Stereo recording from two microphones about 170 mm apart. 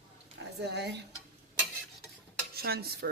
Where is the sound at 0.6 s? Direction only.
85° right.